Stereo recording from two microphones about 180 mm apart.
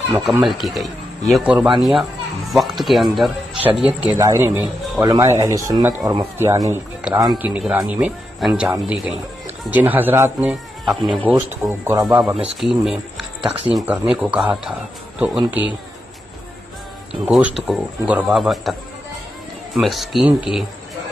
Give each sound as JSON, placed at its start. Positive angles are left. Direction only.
{"t": 0.2, "sound": "speech", "side_deg": 0}
{"t": 4.2, "sound": "speech", "side_deg": -15}
{"t": 7.0, "sound": "speech", "side_deg": -5}
{"t": 10.5, "sound": "speech", "side_deg": 0}
{"t": 11.8, "sound": "speech", "side_deg": -15}
{"t": 17.1, "sound": "speech", "side_deg": -5}